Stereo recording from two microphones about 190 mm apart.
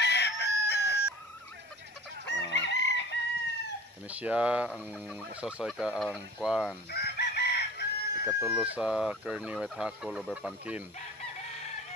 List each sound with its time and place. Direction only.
0.0 s chicken: 65° left (ahead or behind)
2.5 s chicken: 65° left (ahead or behind)
4.1 s speech: 5° right (ahead or behind)
6.9 s chicken: 60° left (ahead or behind)
8.3 s speech: 10° right (ahead or behind)